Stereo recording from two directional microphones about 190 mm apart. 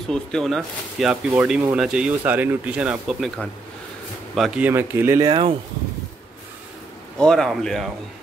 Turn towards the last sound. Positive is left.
turn(degrees=0)  # may be behind; listen again after turning